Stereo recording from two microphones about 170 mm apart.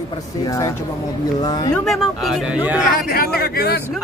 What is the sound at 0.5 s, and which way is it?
Speech, 20° left (ahead or behind).